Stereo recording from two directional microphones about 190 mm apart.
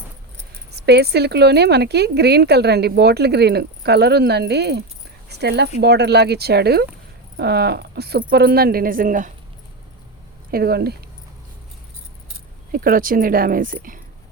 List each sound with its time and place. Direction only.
0.7 s speech: 60° right (ahead or behind); by 9.3 s 45° right (ahead or behind)
10.5 s speech: 55° right (ahead or behind)
12.7 s speech: 50° right (ahead or behind)